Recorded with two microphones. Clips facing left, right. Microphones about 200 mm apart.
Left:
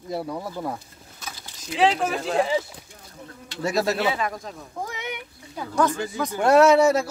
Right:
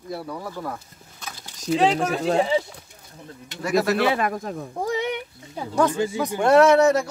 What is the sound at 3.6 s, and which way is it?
Speech, 25° left (ahead or behind).